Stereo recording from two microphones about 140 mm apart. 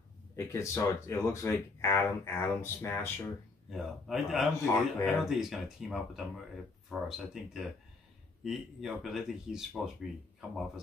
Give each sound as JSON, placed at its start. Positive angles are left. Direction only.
{"t": 0.4, "sound": "speech", "side_deg": 20}
{"t": 3.7, "sound": "speech", "side_deg": 0}